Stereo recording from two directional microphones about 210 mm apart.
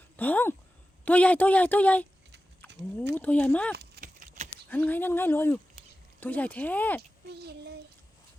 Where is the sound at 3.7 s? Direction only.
45° right (ahead or behind).